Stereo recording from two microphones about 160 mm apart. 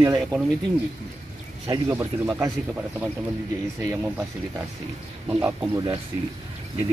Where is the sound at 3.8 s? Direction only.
15° right (ahead or behind).